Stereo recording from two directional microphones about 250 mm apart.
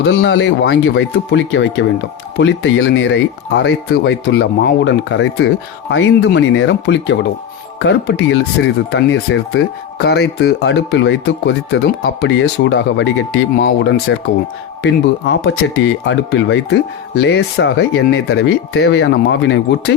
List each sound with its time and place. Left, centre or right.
0.0 s speech: left
13.6 s speech: left
14.8 s speech: left